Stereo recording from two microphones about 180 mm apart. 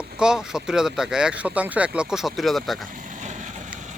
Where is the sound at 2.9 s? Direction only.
45° right (ahead or behind).